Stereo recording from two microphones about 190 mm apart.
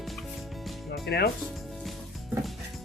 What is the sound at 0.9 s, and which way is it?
Music, 60° left (ahead or behind).